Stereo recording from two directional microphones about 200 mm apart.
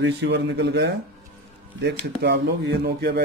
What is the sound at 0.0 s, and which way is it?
Speech, 60° right (ahead or behind).